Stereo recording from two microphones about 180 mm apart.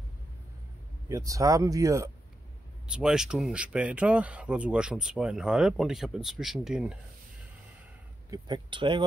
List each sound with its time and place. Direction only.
1.0 s speech: 20° right (ahead or behind)
2.9 s speech: 5° right (ahead or behind)
8.3 s speech: 25° right (ahead or behind)